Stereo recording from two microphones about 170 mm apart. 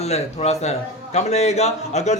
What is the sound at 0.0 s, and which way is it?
A man's voice, 40° left (ahead or behind).